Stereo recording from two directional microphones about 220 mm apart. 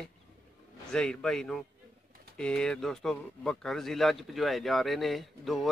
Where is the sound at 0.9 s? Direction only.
5° left (ahead or behind).